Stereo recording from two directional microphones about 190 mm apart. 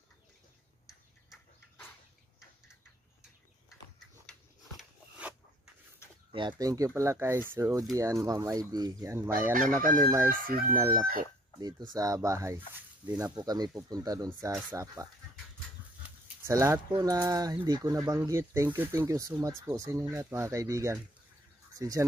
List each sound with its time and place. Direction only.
6.3 s speech: 20° right (ahead or behind)
9.5 s chicken: 45° right (ahead or behind)
10.0 s speech: 10° right (ahead or behind)
10.3 s chicken: 50° right (ahead or behind)
10.7 s speech: 15° right (ahead or behind)
16.0 s a sound: 15° right (ahead or behind)
16.9 s speech: 20° right (ahead or behind)